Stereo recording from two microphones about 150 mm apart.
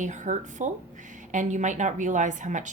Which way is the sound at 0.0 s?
55° right (ahead or behind).